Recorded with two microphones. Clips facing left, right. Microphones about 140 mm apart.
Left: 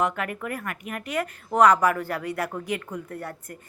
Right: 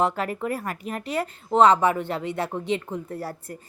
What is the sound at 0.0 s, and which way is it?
A woman's voice, 30° right (ahead or behind).